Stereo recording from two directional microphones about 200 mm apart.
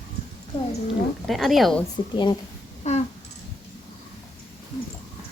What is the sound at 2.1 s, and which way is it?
Speech, 20° left (ahead or behind).